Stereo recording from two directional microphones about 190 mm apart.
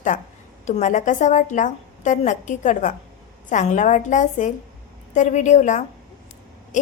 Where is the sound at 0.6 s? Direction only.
40° left (ahead or behind).